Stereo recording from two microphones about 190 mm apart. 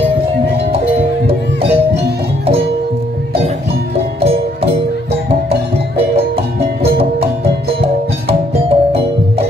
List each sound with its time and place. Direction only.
1.2 s music: 30° right (ahead or behind)
5.5 s music: 30° right (ahead or behind)